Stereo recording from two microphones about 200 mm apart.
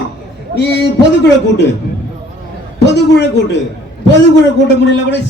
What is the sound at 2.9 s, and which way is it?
Speech, 60° left (ahead or behind).